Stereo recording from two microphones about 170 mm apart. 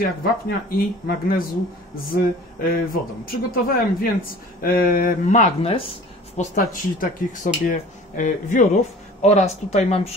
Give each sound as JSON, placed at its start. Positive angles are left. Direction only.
{"t": 0.0, "sound": "speech", "side_deg": 60}
{"t": 6.3, "sound": "speech", "side_deg": 50}